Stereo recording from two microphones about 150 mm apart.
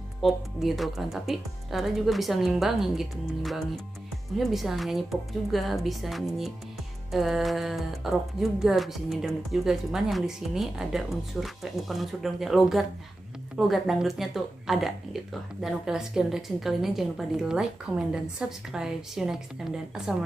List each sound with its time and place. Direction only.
0.2 s speech: centre (ahead or behind)